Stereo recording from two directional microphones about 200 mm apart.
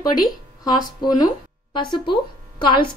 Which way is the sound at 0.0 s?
20° left (ahead or behind).